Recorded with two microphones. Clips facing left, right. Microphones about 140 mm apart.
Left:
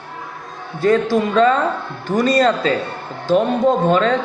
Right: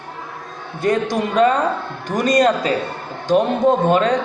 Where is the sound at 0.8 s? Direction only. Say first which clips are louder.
Left 3 dB; 20° right (ahead or behind).